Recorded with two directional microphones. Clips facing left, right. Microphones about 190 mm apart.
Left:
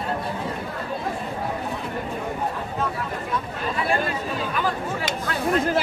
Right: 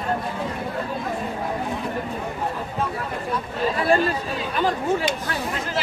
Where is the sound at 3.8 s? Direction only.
35° right (ahead or behind).